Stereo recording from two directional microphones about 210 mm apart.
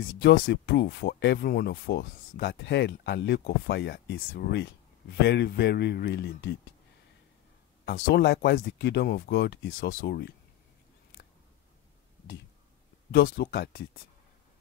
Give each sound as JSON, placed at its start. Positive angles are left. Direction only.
{"t": 0.0, "sound": "speech", "side_deg": 55}
{"t": 7.8, "sound": "speech", "side_deg": 50}
{"t": 13.1, "sound": "speech", "side_deg": 45}